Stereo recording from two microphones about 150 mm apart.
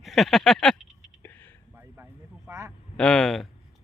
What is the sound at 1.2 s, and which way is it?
Whispering, 15° left (ahead or behind).